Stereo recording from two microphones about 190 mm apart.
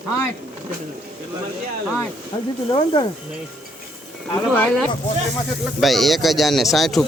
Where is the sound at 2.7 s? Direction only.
25° left (ahead or behind).